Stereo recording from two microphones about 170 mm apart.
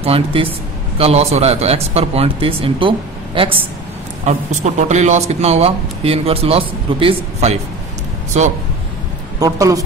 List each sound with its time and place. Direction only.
0.0 s speech: 35° right (ahead or behind)
4.3 s speech: 40° right (ahead or behind)
9.4 s a woman's voice: 20° right (ahead or behind)